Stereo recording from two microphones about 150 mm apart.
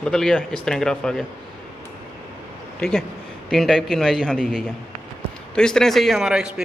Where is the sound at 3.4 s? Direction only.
5° left (ahead or behind).